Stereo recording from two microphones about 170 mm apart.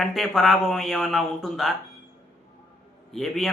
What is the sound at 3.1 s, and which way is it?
Speech, centre (ahead or behind).